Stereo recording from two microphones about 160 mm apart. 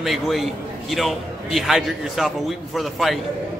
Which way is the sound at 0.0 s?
Centre (ahead or behind).